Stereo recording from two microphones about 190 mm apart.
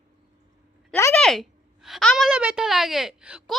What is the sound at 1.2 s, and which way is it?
A woman's voice, centre (ahead or behind).